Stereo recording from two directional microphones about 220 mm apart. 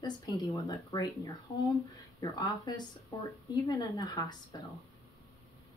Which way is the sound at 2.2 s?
20° left (ahead or behind).